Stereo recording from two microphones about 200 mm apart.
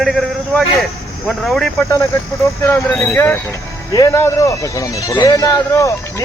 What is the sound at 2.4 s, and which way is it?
Speech, 15° left (ahead or behind).